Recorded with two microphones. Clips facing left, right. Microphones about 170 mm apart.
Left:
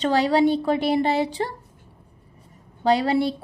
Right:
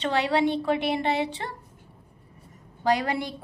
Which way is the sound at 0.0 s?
40° left (ahead or behind).